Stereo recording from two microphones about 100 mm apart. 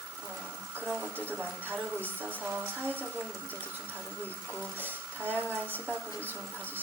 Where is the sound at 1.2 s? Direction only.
20° right (ahead or behind).